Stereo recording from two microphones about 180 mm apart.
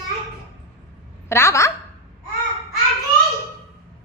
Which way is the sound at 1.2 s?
15° left (ahead or behind).